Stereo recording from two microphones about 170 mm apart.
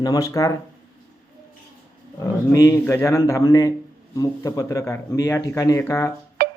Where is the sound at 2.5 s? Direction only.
20° left (ahead or behind).